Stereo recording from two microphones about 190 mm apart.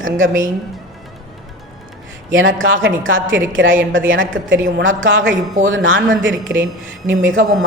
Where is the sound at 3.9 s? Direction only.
85° right.